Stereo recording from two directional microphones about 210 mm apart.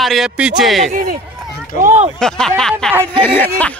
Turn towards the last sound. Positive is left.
turn(degrees=10)  # may be behind; listen again after turning